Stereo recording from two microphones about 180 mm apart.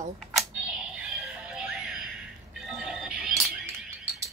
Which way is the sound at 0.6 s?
5° right (ahead or behind).